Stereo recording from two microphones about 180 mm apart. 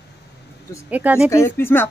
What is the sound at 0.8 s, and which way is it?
Speech, 10° right (ahead or behind).